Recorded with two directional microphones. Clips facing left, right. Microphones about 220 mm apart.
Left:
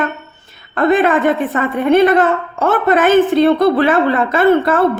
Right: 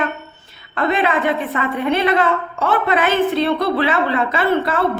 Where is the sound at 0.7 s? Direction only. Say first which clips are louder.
Left 6 dB; 50° left (ahead or behind).